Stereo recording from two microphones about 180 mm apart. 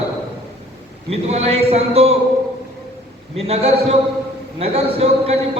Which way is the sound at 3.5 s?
35° right (ahead or behind).